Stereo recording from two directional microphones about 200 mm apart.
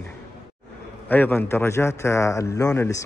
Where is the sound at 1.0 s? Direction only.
10° left (ahead or behind).